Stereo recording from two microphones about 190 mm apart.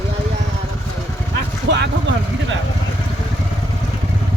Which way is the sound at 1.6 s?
65° right (ahead or behind).